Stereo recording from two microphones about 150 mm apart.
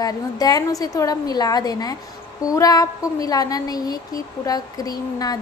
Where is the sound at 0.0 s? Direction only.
25° left (ahead or behind).